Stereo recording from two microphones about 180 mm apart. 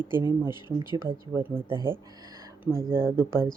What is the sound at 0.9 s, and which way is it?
Speech, 15° right (ahead or behind).